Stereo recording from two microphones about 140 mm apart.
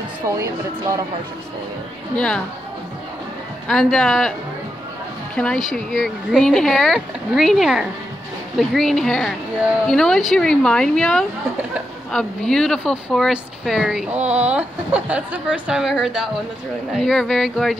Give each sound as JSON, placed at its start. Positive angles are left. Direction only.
{"t": 0.4, "sound": "a woman's voice", "side_deg": -25}
{"t": 2.1, "sound": "a woman's voice", "side_deg": 5}
{"t": 3.6, "sound": "speech", "side_deg": 5}
{"t": 5.3, "sound": "a woman's voice", "side_deg": 5}